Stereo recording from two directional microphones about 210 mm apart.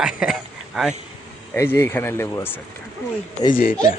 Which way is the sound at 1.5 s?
10° left (ahead or behind).